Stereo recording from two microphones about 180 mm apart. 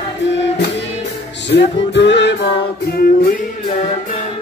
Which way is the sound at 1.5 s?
75° left (ahead or behind).